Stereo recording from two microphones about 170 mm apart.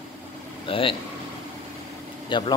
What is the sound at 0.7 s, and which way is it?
Speech, 30° left (ahead or behind).